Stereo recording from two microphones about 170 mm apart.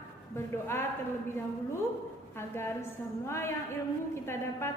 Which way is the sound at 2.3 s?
15° left (ahead or behind).